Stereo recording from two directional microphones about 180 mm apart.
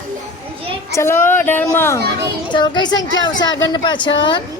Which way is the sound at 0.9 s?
15° left (ahead or behind).